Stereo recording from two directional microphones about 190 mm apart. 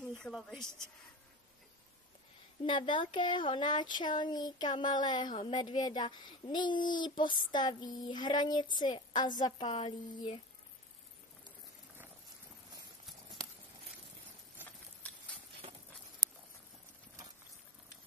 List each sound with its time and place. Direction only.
0.2 s a woman's voice: centre (ahead or behind)
2.6 s speech: 25° left (ahead or behind)